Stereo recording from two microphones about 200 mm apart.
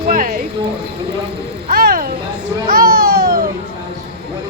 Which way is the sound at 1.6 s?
45° right (ahead or behind).